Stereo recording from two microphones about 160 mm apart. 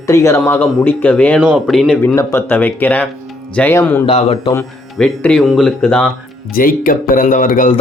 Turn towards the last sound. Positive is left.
turn(degrees=60)  # may be behind; listen again after turning